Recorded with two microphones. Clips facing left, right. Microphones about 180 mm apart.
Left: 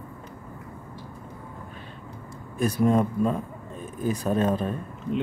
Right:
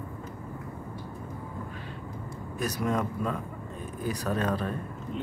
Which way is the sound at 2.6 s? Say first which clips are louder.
Left 7 dB; 30° left (ahead or behind).